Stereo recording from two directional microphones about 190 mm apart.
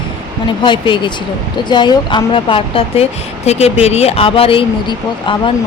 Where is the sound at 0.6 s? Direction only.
25° left (ahead or behind).